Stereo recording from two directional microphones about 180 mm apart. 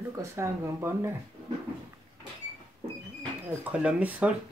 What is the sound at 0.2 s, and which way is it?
Speech, 15° right (ahead or behind).